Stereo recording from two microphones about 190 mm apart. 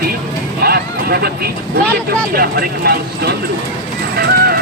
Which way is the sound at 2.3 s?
50° right (ahead or behind).